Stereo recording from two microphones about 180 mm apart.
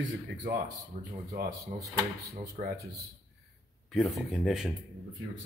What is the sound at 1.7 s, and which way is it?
Speech, 45° right (ahead or behind).